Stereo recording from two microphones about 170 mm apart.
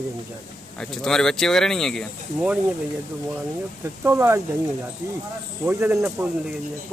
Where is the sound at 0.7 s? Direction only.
Centre (ahead or behind).